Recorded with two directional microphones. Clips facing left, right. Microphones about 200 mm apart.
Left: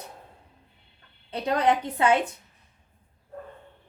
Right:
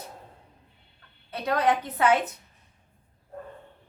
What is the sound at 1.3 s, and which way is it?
Speech, 25° left (ahead or behind).